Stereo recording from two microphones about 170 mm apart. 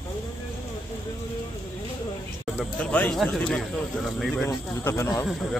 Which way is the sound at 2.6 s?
10° left (ahead or behind).